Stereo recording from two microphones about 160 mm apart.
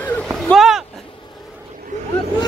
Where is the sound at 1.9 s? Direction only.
50° right (ahead or behind).